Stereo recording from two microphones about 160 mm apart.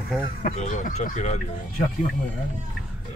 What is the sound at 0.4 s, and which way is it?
Speech, 50° left (ahead or behind).